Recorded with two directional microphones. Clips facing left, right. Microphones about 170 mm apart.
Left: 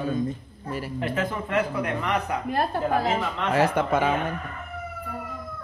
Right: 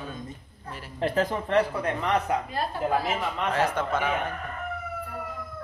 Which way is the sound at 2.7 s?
55° left (ahead or behind).